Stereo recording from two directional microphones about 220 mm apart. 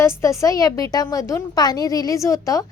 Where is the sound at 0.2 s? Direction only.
15° left (ahead or behind).